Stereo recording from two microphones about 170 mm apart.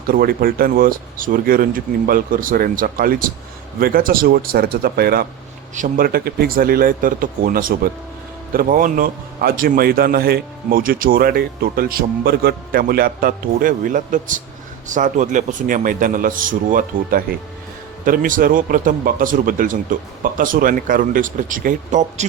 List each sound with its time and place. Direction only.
0.1 s a man's voice: 60° right (ahead or behind)
5.7 s a man's voice: 50° right (ahead or behind)